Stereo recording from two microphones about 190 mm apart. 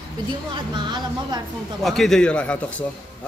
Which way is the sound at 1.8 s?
Centre (ahead or behind).